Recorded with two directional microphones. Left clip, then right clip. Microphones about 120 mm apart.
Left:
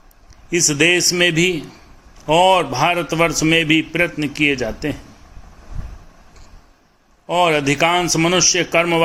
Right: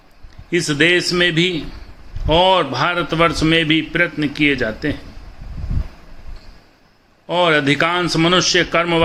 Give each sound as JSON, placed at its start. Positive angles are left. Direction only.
{"t": 0.5, "sound": "a man's voice", "side_deg": 30}
{"t": 7.3, "sound": "a man's voice", "side_deg": 30}